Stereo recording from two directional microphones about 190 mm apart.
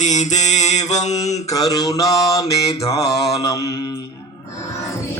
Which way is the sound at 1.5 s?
20° left (ahead or behind).